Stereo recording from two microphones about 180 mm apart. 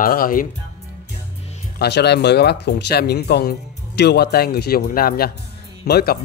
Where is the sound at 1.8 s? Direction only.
70° left (ahead or behind).